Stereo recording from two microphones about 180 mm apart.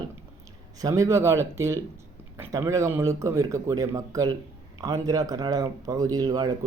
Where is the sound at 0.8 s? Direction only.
20° right (ahead or behind).